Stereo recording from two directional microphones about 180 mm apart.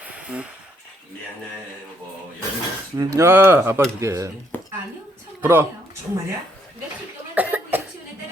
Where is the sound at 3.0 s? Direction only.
15° right (ahead or behind).